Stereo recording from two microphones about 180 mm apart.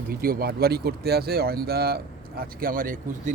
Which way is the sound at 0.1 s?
55° right (ahead or behind).